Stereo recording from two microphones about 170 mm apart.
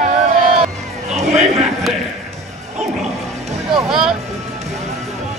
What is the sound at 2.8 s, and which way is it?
Music, centre (ahead or behind).